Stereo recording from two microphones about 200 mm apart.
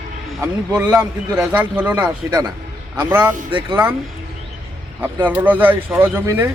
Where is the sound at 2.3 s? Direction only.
20° right (ahead or behind).